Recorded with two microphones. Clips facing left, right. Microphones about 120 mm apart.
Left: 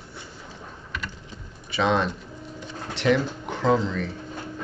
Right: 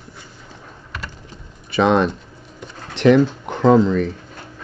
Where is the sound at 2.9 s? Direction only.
55° right (ahead or behind).